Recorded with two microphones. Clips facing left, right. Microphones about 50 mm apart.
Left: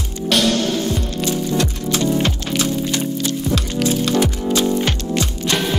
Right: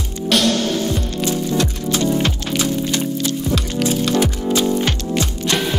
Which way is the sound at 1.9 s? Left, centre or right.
Centre.